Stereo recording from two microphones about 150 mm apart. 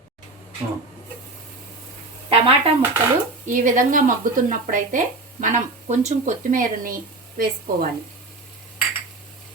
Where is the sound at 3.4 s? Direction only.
60° right (ahead or behind).